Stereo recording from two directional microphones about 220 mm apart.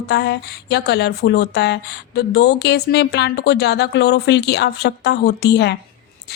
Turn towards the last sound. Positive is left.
turn(degrees=50)  # may be behind; listen again after turning